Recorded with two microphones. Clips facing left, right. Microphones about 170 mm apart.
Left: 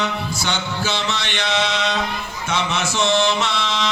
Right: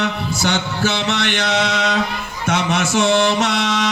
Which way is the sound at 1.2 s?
45° right (ahead or behind).